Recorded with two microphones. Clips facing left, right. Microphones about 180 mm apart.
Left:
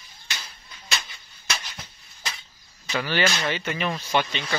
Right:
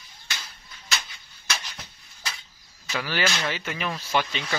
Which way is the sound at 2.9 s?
5° right (ahead or behind).